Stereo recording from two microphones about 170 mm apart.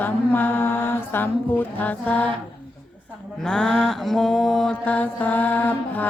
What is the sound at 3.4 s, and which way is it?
Mantra, 5° left (ahead or behind).